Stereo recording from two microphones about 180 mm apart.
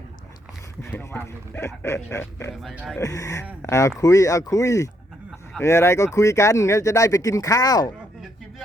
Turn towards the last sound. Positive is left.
turn(degrees=20)  # may be behind; listen again after turning